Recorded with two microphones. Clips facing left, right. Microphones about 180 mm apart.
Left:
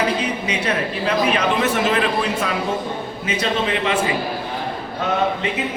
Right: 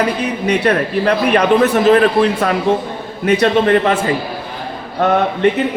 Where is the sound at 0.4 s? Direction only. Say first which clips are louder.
Right 8 dB; 60° right (ahead or behind).